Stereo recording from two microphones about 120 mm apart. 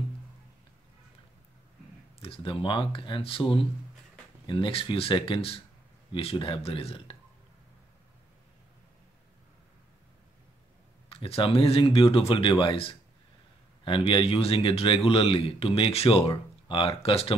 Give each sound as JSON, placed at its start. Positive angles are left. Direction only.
{"t": 2.1, "sound": "speech", "side_deg": 50}
{"t": 11.1, "sound": "speech", "side_deg": 55}